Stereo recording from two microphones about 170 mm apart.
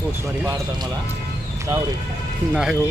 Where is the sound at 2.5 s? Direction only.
5° right (ahead or behind).